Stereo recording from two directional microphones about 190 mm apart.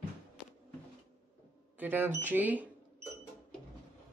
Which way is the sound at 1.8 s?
10° right (ahead or behind).